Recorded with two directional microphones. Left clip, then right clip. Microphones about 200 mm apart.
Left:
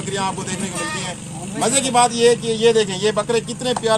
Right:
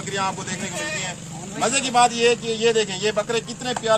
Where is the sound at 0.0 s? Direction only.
Centre (ahead or behind).